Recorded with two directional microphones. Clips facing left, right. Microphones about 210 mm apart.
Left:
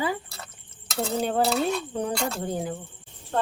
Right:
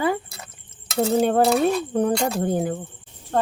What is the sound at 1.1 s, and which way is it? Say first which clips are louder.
A woman's voice: right 5 dB; 55° right (ahead or behind).